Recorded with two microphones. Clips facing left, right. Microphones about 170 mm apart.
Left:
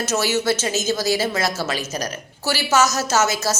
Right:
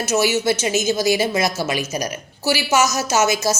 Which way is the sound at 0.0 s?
10° right (ahead or behind).